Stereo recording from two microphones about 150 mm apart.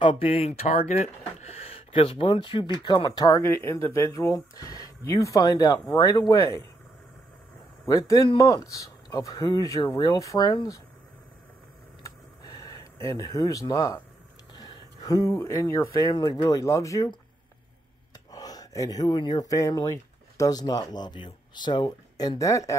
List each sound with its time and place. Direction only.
0.0 s speech: 35° left (ahead or behind); by 6.6 s 20° left (ahead or behind)
7.8 s speech: 20° left (ahead or behind)
12.0 s a sound: 25° left (ahead or behind)
14.5 s speech: 25° left (ahead or behind)
18.3 s speech: 25° left (ahead or behind)